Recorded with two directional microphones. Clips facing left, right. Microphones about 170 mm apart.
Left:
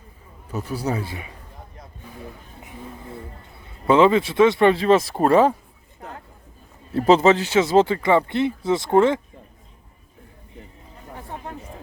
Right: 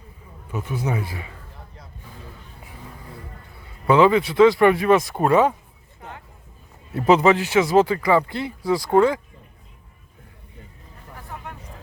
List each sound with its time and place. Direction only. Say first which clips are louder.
0.5 s a man's voice: left 1 dB; 35° left (ahead or behind)
3.8 s speech: even; 25° left (ahead or behind)
6.9 s speech: left 1 dB; 30° left (ahead or behind)
11.1 s a sound: left 3 dB; 30° left (ahead or behind)